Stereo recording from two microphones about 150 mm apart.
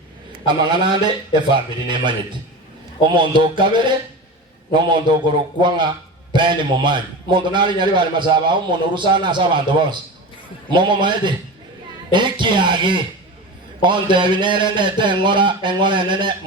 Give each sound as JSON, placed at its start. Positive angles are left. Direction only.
{"t": 0.4, "sound": "a man's voice", "side_deg": -30}
{"t": 3.2, "sound": "a man's voice", "side_deg": -30}